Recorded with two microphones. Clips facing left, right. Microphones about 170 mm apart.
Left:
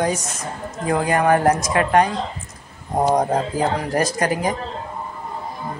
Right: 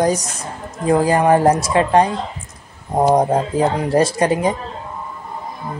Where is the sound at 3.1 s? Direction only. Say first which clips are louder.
Right 4 dB; 25° right (ahead or behind).